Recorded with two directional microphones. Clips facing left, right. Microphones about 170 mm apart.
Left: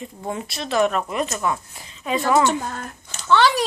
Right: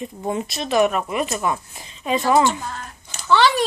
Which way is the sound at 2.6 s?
50° left (ahead or behind).